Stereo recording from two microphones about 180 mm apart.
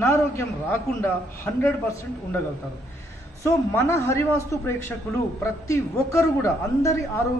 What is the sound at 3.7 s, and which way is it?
A man's voice, 15° left (ahead or behind).